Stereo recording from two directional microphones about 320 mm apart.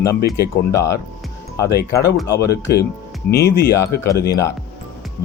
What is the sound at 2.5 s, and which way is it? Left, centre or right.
Speech, left.